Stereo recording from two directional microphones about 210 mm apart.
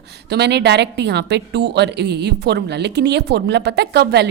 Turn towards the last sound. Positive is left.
turn(degrees=-50)  # may be behind; listen again after turning